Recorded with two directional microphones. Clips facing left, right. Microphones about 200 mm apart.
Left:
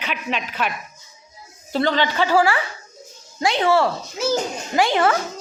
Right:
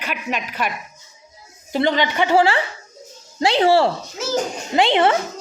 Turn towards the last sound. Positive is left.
turn(degrees=-25)  # may be behind; listen again after turning